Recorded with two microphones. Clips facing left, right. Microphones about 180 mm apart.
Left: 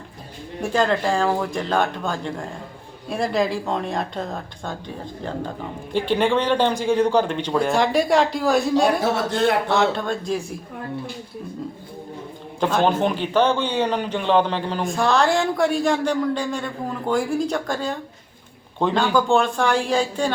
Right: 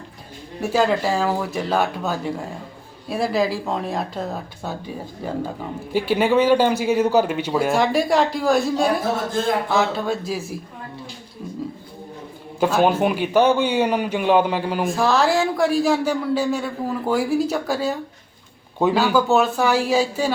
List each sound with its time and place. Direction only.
0.6 s a man's voice: 5° right (ahead or behind)
9.0 s a man's voice: 70° left (ahead or behind)
9.7 s speech: 5° right (ahead or behind)
12.5 s a man's voice: 10° right (ahead or behind)